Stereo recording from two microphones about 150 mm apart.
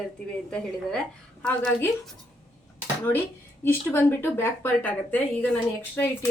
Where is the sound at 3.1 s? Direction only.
15° left (ahead or behind).